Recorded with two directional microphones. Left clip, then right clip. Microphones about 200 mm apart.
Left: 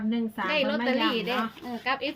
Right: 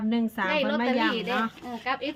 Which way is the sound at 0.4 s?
10° left (ahead or behind).